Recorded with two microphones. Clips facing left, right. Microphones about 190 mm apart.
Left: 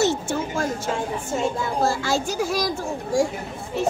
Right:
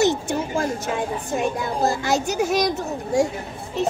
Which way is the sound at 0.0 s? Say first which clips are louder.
Right 2 dB; 15° right (ahead or behind).